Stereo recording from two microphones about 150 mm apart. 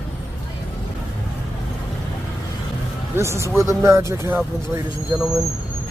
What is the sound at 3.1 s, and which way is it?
Speech, 20° right (ahead or behind).